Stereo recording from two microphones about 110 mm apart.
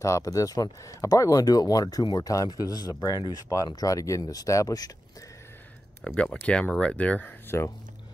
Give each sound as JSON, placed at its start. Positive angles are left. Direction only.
{"t": 0.0, "sound": "speech", "side_deg": 30}
{"t": 6.0, "sound": "speech", "side_deg": 10}